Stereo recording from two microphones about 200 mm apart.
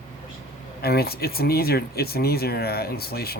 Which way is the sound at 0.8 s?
50° left (ahead or behind).